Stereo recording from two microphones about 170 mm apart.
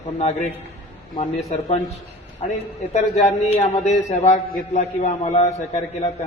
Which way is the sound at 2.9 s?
40° left (ahead or behind).